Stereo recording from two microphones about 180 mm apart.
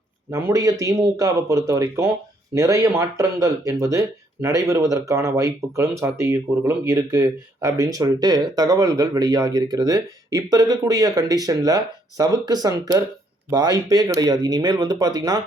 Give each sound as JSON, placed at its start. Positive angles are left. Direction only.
{"t": 0.3, "sound": "speech", "side_deg": -15}